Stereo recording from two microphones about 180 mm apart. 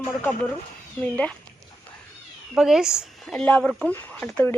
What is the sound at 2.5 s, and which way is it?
Speech, 5° right (ahead or behind).